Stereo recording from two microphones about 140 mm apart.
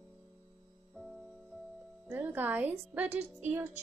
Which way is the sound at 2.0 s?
15° right (ahead or behind).